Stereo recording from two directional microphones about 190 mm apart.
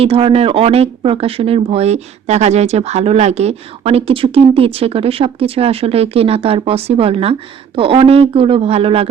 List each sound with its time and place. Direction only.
0.0 s speech: 30° right (ahead or behind)